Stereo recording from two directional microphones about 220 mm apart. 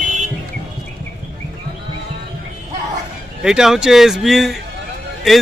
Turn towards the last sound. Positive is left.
turn(degrees=0)  # may be behind; listen again after turning